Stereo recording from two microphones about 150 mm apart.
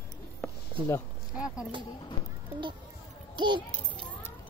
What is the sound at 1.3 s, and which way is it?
Speech, 5° right (ahead or behind).